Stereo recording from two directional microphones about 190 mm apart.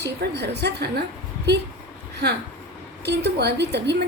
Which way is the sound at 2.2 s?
60° right (ahead or behind).